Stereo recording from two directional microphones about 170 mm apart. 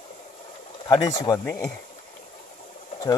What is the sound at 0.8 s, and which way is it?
Speech, 20° left (ahead or behind).